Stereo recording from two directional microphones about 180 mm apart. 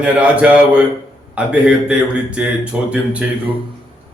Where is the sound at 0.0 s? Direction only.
5° right (ahead or behind).